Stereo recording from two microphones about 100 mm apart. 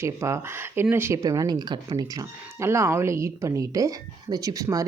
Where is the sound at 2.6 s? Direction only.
25° right (ahead or behind).